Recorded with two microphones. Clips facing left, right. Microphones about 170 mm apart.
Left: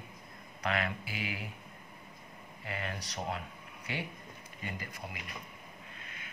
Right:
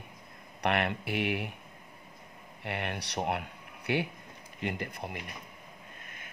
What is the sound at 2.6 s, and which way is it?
Speech, 70° right (ahead or behind).